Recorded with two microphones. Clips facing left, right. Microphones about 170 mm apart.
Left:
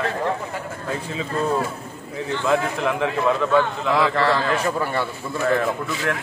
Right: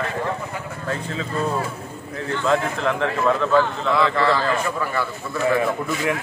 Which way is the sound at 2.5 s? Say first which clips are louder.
Even; 10° left (ahead or behind).